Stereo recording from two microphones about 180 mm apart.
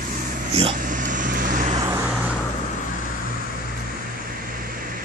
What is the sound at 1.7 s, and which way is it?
Vehicle, 20° right (ahead or behind).